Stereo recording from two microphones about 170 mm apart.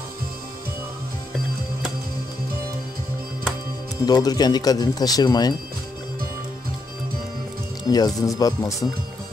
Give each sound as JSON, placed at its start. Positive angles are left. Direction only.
{"t": 4.0, "sound": "speech", "side_deg": 20}
{"t": 7.9, "sound": "speech", "side_deg": 20}